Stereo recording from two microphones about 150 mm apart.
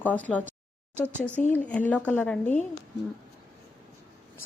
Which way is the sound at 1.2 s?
15° left (ahead or behind).